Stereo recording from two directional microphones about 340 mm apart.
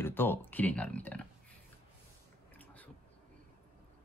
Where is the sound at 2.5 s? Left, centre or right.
Centre.